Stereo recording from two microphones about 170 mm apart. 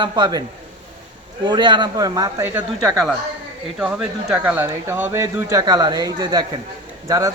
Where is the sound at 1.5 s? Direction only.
25° right (ahead or behind).